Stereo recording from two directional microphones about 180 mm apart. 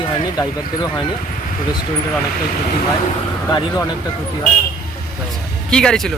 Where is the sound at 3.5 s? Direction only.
20° left (ahead or behind).